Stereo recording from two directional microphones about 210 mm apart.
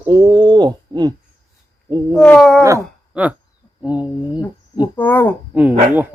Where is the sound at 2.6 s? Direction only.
15° right (ahead or behind).